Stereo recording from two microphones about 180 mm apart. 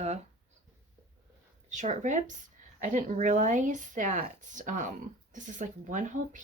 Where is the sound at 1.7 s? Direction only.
40° right (ahead or behind).